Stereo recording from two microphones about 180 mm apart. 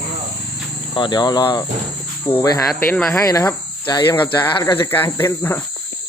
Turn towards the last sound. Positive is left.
turn(degrees=10)  # may be behind; listen again after turning